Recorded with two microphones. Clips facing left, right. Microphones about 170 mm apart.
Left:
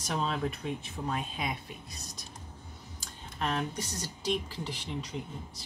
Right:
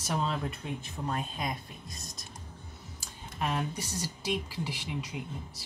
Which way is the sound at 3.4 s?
10° right (ahead or behind).